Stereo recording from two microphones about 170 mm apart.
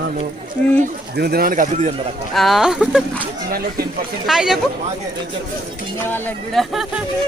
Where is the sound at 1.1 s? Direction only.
65° right (ahead or behind).